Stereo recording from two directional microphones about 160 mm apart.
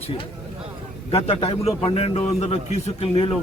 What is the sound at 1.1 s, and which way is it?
A man's voice, 40° left (ahead or behind).